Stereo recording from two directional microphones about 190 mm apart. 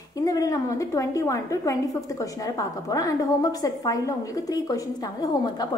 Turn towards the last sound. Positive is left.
turn(degrees=20)  # may be behind; listen again after turning